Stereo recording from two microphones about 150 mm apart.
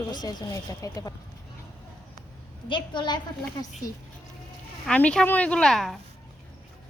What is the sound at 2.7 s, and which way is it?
A woman's voice, 30° left (ahead or behind).